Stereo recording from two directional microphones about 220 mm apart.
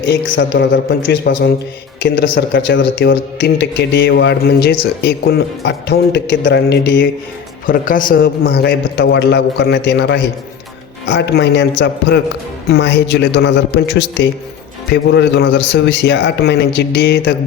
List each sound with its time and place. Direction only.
0.0 s a man's voice: 55° left (ahead or behind)
7.7 s speech: 40° left (ahead or behind)